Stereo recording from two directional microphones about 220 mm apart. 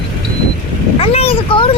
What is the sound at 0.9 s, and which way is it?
Vehicle, 25° left (ahead or behind).